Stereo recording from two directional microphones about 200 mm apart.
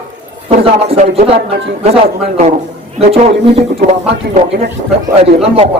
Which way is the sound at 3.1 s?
30° right (ahead or behind).